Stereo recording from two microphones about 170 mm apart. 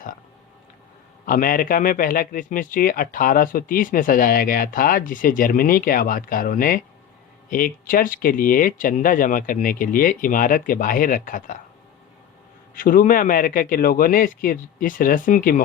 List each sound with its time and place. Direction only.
1.2 s a man's voice: 55° left (ahead or behind)
12.7 s a man's voice: 55° left (ahead or behind)